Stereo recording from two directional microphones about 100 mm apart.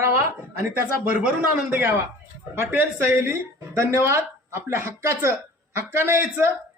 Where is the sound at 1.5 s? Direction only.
15° right (ahead or behind).